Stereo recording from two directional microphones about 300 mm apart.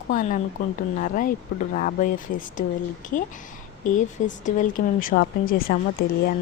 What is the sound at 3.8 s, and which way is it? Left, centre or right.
Speech, left.